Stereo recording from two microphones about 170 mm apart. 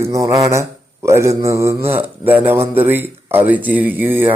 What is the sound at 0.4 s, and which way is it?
Mantra, 15° right (ahead or behind).